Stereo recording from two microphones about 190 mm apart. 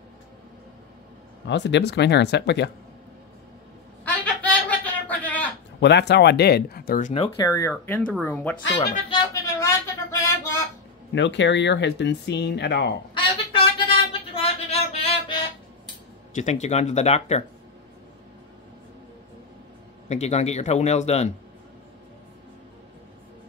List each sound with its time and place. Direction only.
1.5 s speech: 70° left (ahead or behind)
4.0 s a sound: 10° left (ahead or behind)
5.8 s speech: 65° left (ahead or behind); by 7.2 s 40° left (ahead or behind)
7.3 s speech: 15° left (ahead or behind)
9.1 s a sound: 15° left (ahead or behind)
11.1 s speech: 70° left (ahead or behind)
13.1 s a sound: 25° left (ahead or behind)
16.3 s speech: 40° left (ahead or behind)
20.1 s speech: 35° left (ahead or behind)